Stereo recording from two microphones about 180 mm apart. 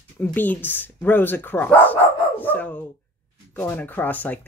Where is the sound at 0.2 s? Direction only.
10° left (ahead or behind).